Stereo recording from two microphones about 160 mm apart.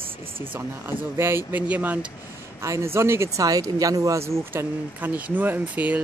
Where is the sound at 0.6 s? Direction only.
15° right (ahead or behind).